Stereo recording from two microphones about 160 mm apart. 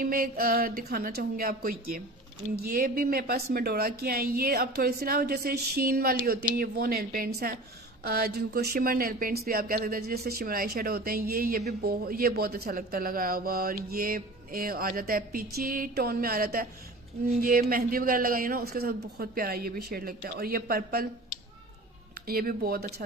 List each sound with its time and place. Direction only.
0.0 s speech: 65° right (ahead or behind)
22.2 s speech: 65° right (ahead or behind)